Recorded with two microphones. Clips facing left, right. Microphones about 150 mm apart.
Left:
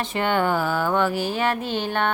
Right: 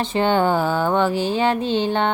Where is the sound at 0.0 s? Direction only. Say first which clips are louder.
Right 4 dB; 30° right (ahead or behind).